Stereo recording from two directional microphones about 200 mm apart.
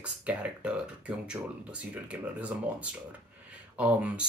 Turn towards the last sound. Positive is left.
turn(degrees=-5)  # may be behind; listen again after turning